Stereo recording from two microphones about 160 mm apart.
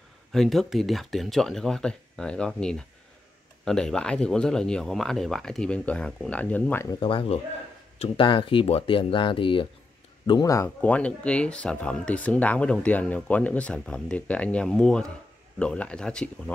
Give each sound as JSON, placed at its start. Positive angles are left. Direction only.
{"t": 0.3, "sound": "speech", "side_deg": 0}
{"t": 7.0, "sound": "speech", "side_deg": 30}